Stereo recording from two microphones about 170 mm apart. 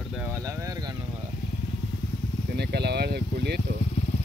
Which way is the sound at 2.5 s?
75° right (ahead or behind).